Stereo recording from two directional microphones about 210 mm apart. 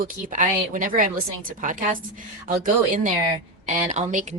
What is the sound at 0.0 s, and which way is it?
A woman's voice, 40° right (ahead or behind).